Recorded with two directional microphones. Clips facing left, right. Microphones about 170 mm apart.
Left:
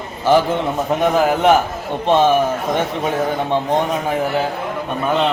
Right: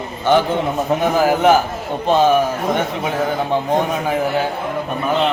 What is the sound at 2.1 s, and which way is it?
Speech, centre (ahead or behind).